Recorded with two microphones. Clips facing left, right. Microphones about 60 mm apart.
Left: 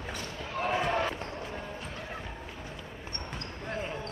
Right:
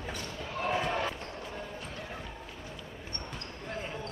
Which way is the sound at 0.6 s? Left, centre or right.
Centre.